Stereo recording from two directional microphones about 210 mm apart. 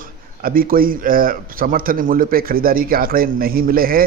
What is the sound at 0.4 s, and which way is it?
Speech, 45° right (ahead or behind).